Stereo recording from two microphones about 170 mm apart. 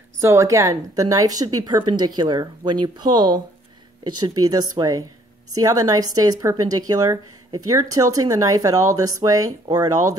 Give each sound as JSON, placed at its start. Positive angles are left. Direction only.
{"t": 0.2, "sound": "speech", "side_deg": -15}